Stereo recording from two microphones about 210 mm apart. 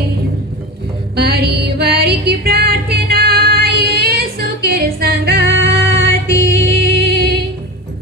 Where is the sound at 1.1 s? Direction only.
50° right (ahead or behind).